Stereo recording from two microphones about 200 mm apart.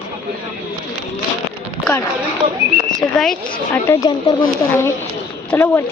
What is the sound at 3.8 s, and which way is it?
Speech, 15° left (ahead or behind).